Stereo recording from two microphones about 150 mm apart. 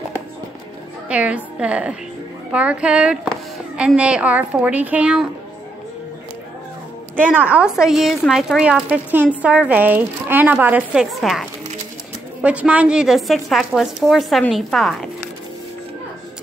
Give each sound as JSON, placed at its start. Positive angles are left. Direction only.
{"t": 1.0, "sound": "a woman's voice", "side_deg": -10}
{"t": 7.2, "sound": "a woman's voice", "side_deg": -10}